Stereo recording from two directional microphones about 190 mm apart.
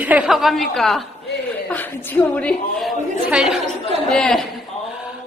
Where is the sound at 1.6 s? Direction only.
10° left (ahead or behind).